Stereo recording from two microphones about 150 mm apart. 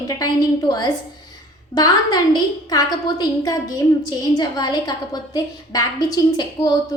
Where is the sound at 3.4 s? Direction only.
25° left (ahead or behind).